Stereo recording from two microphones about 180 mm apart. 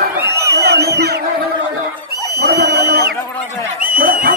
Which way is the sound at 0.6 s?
60° right (ahead or behind).